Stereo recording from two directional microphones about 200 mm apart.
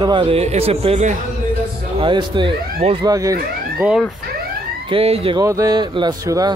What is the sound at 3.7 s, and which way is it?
Speech, 5° right (ahead or behind).